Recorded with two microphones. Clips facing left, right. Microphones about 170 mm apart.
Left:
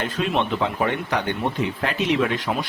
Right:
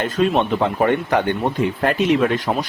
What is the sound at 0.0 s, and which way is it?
Speech, 45° right (ahead or behind).